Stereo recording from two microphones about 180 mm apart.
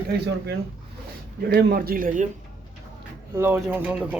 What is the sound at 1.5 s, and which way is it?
Speech, 60° right (ahead or behind).